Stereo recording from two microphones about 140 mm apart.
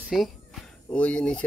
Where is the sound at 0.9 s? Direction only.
10° left (ahead or behind).